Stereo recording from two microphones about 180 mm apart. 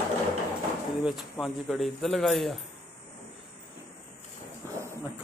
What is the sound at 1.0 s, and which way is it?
Speech, centre (ahead or behind).